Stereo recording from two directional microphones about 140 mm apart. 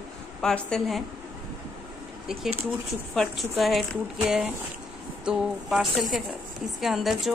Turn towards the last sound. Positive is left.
turn(degrees=0)  # may be behind; listen again after turning